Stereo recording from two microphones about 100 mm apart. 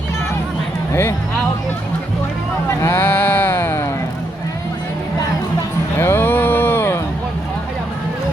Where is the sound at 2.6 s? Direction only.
30° left (ahead or behind).